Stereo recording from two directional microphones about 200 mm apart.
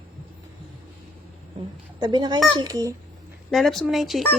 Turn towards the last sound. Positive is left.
turn(degrees=0)  # may be behind; listen again after turning